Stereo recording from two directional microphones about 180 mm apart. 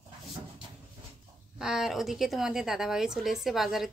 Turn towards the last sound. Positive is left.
turn(degrees=0)  # may be behind; listen again after turning